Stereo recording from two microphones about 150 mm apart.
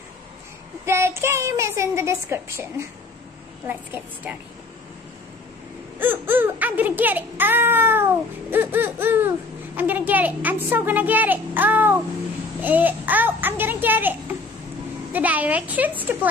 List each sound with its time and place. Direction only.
0.8 s speech: 15° right (ahead or behind)
5.9 s speech: 15° right (ahead or behind)